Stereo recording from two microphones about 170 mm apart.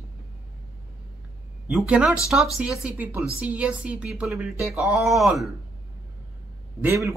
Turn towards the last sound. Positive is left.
turn(degrees=-15)  # may be behind; listen again after turning